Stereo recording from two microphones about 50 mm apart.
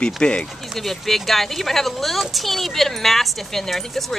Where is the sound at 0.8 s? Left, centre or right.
Centre.